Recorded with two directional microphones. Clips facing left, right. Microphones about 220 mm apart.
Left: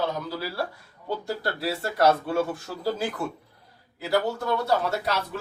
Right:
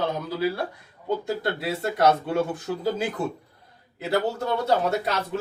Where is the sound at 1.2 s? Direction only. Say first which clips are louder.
Right 2 dB; 20° right (ahead or behind).